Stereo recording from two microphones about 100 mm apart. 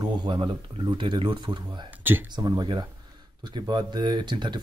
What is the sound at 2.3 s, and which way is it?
A man's voice, 45° right (ahead or behind).